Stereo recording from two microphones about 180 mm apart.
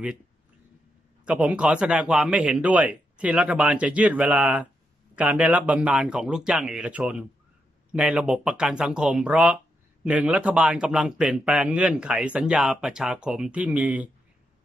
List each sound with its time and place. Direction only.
1.2 s a man's voice: 5° right (ahead or behind)